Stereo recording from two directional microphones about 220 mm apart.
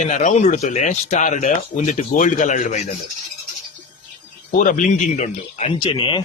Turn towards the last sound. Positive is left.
turn(degrees=20)  # may be behind; listen again after turning